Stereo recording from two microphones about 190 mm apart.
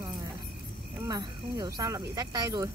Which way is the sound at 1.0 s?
20° right (ahead or behind).